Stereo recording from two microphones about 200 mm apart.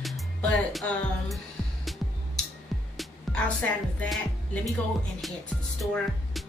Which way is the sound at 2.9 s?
5° left (ahead or behind).